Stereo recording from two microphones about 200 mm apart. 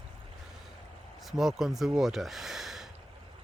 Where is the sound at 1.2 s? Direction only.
Centre (ahead or behind).